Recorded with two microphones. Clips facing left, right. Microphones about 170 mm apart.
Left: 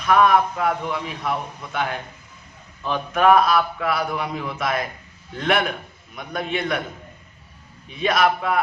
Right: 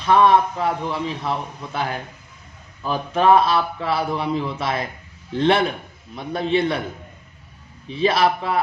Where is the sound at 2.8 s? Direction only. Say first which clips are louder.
Even; 35° right (ahead or behind).